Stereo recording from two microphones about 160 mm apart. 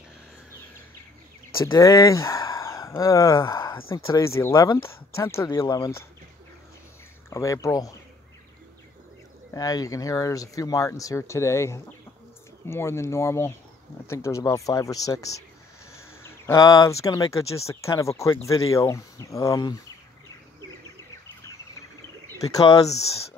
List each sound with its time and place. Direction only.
1.6 s speech: 20° left (ahead or behind)
7.2 s speech: 20° left (ahead or behind)
9.5 s speech: 20° left (ahead or behind)
22.3 s speech: 20° left (ahead or behind)
22.7 s speech: 40° left (ahead or behind)